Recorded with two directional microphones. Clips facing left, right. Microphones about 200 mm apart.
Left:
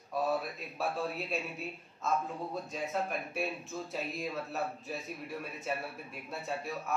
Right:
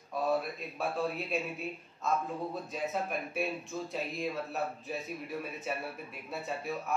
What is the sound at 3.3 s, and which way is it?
Speech, centre (ahead or behind).